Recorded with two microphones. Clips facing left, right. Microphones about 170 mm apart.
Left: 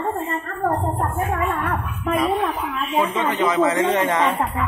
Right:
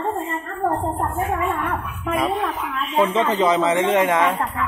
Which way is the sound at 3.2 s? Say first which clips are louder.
Even; 30° right (ahead or behind).